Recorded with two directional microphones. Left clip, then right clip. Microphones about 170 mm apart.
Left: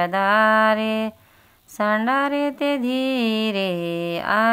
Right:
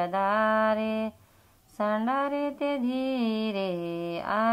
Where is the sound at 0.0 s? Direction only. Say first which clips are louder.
Left 8 dB; 20° left (ahead or behind).